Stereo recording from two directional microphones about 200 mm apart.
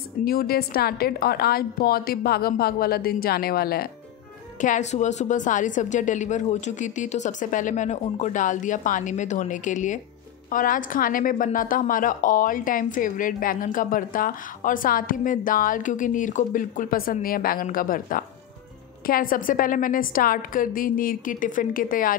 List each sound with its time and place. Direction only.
0.2 s a woman's voice: 50° left (ahead or behind)
4.6 s a woman's voice: 40° left (ahead or behind)